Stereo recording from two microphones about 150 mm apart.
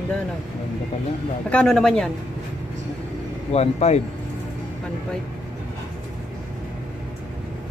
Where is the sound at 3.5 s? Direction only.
45° left (ahead or behind).